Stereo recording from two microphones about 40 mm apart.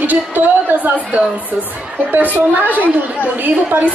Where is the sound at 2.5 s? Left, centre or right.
Right.